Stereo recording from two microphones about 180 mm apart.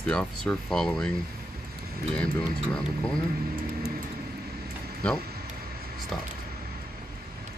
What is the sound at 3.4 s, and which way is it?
Vehicle, 60° right (ahead or behind).